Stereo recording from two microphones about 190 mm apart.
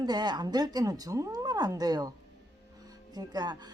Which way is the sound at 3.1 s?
20° right (ahead or behind).